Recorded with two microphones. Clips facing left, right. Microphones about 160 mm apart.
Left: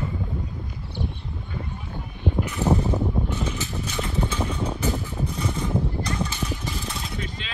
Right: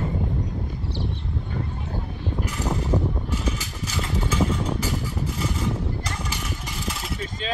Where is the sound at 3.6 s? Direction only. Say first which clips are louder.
Left 2 dB; 5° right (ahead or behind).